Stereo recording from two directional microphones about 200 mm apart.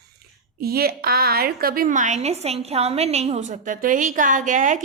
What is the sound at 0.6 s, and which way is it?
A woman's voice, 50° right (ahead or behind).